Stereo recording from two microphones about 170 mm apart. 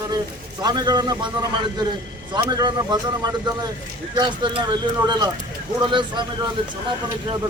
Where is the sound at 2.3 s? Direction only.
25° right (ahead or behind).